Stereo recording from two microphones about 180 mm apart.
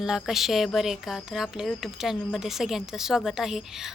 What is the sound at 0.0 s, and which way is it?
Speech, centre (ahead or behind).